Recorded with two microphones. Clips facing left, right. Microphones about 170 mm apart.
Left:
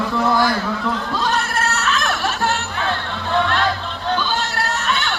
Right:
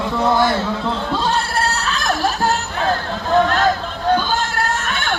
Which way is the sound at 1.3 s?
35° right (ahead or behind).